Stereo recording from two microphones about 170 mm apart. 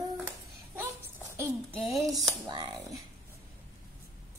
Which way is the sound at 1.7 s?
Centre (ahead or behind).